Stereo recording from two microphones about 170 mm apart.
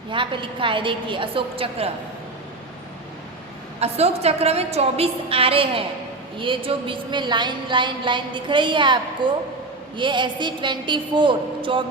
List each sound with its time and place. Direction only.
0.1 s a woman's voice: 30° right (ahead or behind)
3.8 s a woman's voice: 40° right (ahead or behind)